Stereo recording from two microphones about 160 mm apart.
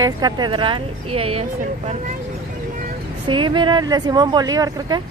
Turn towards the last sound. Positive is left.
turn(degrees=-25)  # may be behind; listen again after turning